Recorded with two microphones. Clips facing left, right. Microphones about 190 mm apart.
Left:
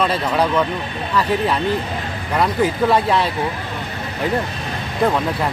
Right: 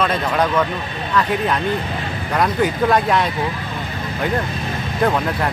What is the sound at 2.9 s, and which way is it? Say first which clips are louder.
Speech: even; centre (ahead or behind).